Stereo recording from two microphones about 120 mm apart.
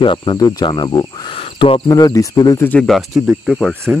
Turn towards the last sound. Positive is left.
turn(degrees=0)  # may be behind; listen again after turning